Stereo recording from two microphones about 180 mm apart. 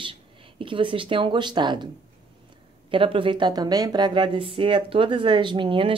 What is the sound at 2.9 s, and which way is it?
Speech, 30° right (ahead or behind).